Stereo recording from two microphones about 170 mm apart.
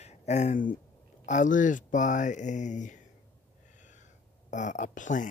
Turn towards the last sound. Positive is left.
turn(degrees=45)  # may be behind; listen again after turning